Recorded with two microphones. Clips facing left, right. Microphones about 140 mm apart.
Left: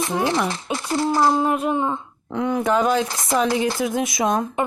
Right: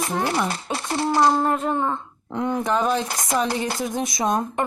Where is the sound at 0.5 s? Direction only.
30° right (ahead or behind).